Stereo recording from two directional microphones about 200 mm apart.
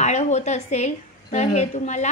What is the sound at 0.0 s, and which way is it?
A woman's voice, 35° left (ahead or behind).